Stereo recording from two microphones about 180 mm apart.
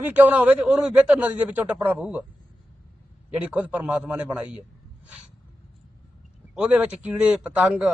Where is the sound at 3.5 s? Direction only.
5° right (ahead or behind).